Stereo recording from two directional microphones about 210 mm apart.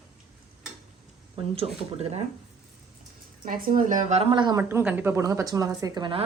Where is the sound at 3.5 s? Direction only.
40° right (ahead or behind).